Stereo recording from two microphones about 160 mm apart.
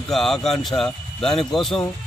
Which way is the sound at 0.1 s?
Centre (ahead or behind).